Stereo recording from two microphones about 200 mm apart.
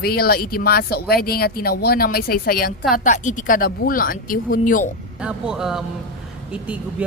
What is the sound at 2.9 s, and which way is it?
Speech, 40° left (ahead or behind).